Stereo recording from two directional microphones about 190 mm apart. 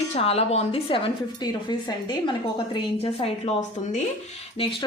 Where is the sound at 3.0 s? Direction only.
35° left (ahead or behind).